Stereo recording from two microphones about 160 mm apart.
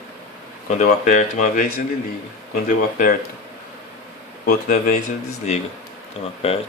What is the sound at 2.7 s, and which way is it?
Speech, 55° left (ahead or behind).